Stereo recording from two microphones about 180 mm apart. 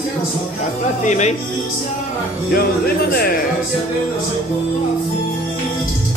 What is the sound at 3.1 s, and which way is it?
Music, 55° left (ahead or behind).